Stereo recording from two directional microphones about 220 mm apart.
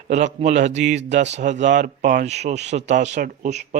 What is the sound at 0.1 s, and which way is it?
Speech, 35° right (ahead or behind).